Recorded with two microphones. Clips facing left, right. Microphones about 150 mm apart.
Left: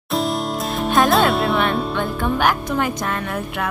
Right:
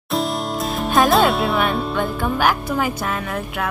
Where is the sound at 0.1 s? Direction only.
Centre (ahead or behind).